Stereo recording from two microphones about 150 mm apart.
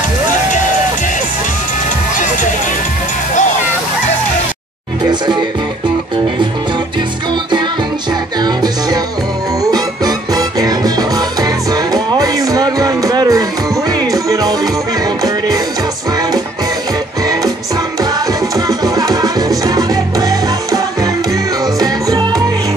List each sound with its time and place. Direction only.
5.0 s music: 30° right (ahead or behind)
9.7 s music: 25° right (ahead or behind)
18.7 s music: 25° right (ahead or behind)